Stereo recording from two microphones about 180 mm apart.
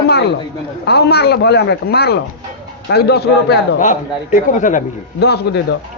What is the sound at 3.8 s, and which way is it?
A man's voice, 45° left (ahead or behind).